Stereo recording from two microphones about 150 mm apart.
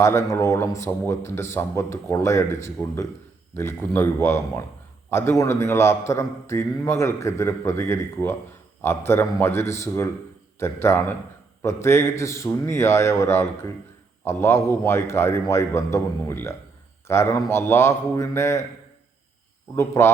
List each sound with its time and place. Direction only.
0.0 s a man's voice: 20° left (ahead or behind)
19.7 s a man's voice: 20° left (ahead or behind)